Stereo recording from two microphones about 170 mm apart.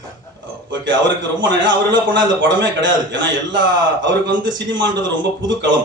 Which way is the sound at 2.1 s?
90° right.